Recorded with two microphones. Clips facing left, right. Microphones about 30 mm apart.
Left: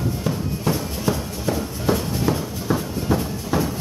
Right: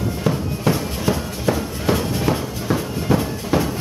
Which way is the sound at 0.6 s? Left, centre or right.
Right.